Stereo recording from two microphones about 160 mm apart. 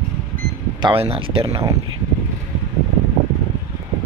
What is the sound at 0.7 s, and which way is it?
Speech, 35° right (ahead or behind).